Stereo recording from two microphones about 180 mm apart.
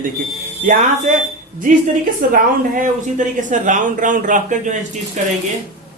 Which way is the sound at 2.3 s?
45° right (ahead or behind).